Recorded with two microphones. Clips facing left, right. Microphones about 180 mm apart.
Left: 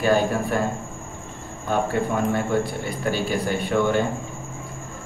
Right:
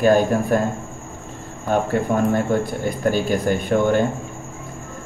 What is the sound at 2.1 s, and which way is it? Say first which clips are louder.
Speech: right 5 dB; 45° right (ahead or behind).